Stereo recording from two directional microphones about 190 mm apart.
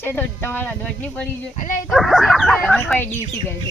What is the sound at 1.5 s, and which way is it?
Speech, 40° left (ahead or behind).